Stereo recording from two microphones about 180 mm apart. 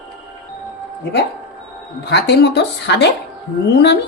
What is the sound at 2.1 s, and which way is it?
A man's voice, 70° left (ahead or behind).